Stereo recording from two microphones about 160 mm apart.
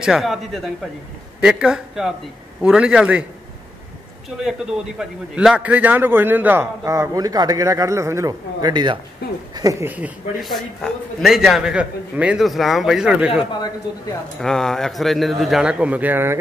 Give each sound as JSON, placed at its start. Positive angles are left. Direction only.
{"t": 0.0, "sound": "a man's voice", "side_deg": 0}
{"t": 4.4, "sound": "a man's voice", "side_deg": -5}